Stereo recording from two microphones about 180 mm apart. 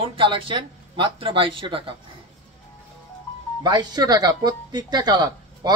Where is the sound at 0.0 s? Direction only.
30° right (ahead or behind).